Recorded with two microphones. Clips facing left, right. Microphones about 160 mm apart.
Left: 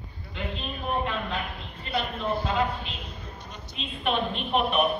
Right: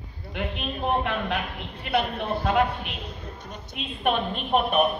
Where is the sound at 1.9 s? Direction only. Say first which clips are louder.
Right 3 dB; 55° right (ahead or behind).